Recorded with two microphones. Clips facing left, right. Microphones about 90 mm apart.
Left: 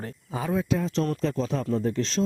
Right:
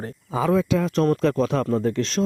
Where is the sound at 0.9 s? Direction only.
60° right (ahead or behind).